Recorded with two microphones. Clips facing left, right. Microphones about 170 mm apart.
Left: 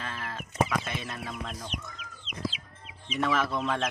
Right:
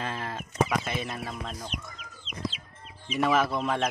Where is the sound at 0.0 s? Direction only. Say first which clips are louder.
Right 4 dB; 20° right (ahead or behind).